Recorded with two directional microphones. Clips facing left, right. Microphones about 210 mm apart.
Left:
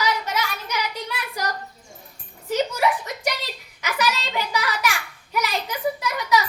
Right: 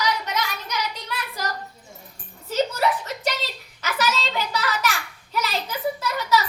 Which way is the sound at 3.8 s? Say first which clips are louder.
Even; 15° left (ahead or behind).